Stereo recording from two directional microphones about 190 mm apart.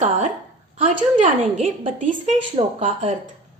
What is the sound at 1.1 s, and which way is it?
Female singing, 40° right (ahead or behind).